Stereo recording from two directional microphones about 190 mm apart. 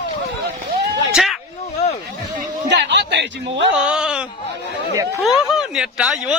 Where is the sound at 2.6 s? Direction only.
65° right (ahead or behind).